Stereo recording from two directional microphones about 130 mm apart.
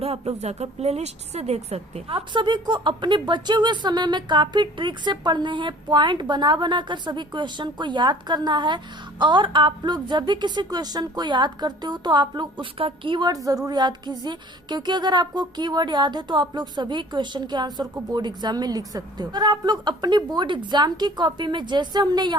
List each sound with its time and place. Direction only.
0.0 s a woman's voice: 50° right (ahead or behind); by 22.4 s 35° right (ahead or behind)